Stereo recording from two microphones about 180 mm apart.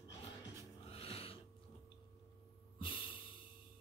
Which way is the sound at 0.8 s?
30° left (ahead or behind).